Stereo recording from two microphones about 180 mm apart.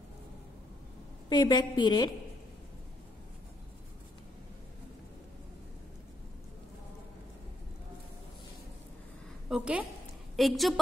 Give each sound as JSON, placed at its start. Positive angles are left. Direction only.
{"t": 1.3, "sound": "a woman's voice", "side_deg": 25}
{"t": 9.5, "sound": "a woman's voice", "side_deg": -5}